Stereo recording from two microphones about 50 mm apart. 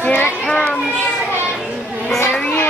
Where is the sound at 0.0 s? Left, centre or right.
Left.